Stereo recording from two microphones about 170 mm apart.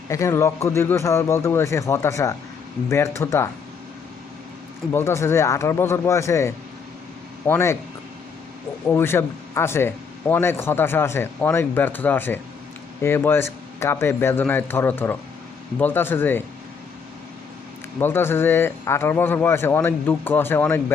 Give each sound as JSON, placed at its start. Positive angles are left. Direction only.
{"t": 0.1, "sound": "speech", "side_deg": 15}
{"t": 4.9, "sound": "speech", "side_deg": 15}
{"t": 8.9, "sound": "speech", "side_deg": 15}
{"t": 18.0, "sound": "speech", "side_deg": 15}